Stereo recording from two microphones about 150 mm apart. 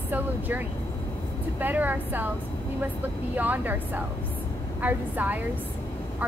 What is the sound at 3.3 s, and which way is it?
Speech, 10° right (ahead or behind).